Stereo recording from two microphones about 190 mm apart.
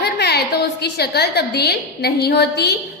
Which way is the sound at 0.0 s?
60° left (ahead or behind).